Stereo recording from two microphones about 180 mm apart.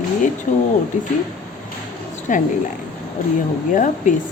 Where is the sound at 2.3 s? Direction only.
45° left (ahead or behind).